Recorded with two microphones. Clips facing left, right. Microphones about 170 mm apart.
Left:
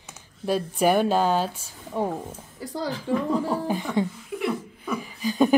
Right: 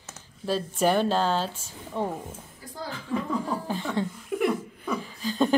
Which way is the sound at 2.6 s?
85° left.